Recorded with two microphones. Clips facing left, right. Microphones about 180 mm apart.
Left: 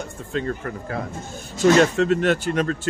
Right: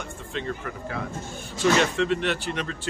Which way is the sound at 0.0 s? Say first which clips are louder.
Left 5 dB; 45° left (ahead or behind).